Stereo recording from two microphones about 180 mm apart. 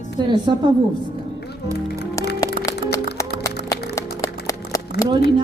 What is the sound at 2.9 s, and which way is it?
Music, 15° left (ahead or behind).